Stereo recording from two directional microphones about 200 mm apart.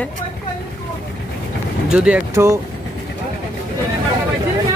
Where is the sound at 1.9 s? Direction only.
5° right (ahead or behind).